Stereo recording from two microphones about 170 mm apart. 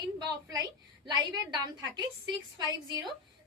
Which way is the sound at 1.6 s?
25° right (ahead or behind).